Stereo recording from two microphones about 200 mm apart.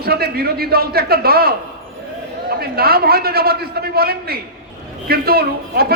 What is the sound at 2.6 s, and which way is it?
A man's voice, 50° right (ahead or behind).